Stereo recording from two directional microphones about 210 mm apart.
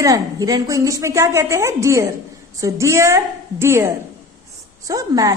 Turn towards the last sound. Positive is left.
turn(degrees=-15)  # may be behind; listen again after turning